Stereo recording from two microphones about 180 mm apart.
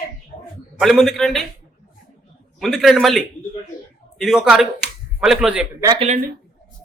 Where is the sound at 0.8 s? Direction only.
Centre (ahead or behind).